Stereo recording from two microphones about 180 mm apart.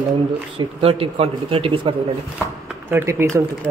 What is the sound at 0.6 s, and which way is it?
Speech, 30° right (ahead or behind).